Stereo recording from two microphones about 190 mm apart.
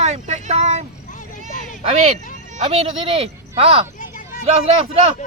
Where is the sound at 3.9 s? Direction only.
45° left (ahead or behind).